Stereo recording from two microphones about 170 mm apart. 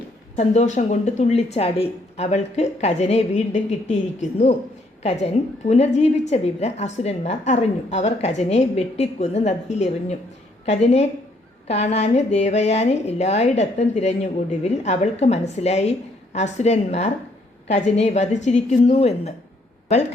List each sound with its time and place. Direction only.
0.3 s speech: 40° left (ahead or behind)